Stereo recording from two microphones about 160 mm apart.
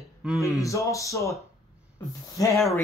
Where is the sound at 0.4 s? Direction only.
20° left (ahead or behind).